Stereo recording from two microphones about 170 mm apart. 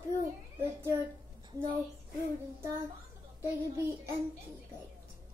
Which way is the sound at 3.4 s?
15° right (ahead or behind).